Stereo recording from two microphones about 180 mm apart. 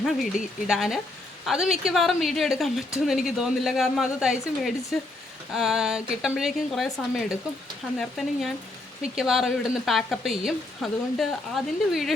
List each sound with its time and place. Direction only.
0.0 s a woman's voice: centre (ahead or behind)